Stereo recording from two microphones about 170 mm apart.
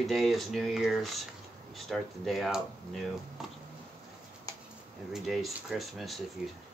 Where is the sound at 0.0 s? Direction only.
Centre (ahead or behind).